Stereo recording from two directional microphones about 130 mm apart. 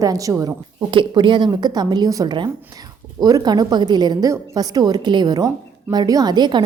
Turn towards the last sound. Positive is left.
turn(degrees=-35)  # may be behind; listen again after turning